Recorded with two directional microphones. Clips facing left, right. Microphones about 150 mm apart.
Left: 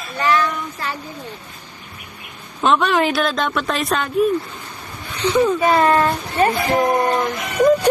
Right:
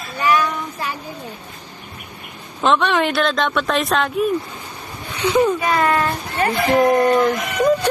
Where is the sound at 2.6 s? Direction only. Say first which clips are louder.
Even; centre (ahead or behind).